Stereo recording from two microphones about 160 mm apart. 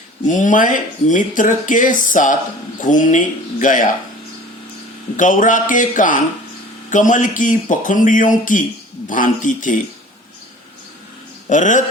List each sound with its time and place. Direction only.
0.3 s speech: 50° left (ahead or behind)
5.1 s speech: 55° left (ahead or behind)
11.4 s speech: 50° left (ahead or behind)